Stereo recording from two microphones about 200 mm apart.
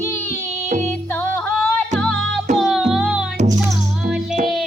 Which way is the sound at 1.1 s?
10° left (ahead or behind).